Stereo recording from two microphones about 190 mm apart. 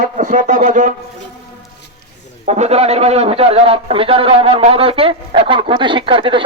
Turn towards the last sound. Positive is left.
turn(degrees=-25)  # may be behind; listen again after turning